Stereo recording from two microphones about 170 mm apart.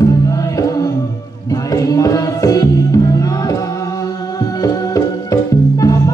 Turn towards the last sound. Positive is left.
turn(degrees=20)  # may be behind; listen again after turning